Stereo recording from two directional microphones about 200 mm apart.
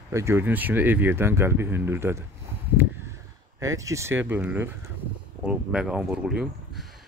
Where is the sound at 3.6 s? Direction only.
15° right (ahead or behind).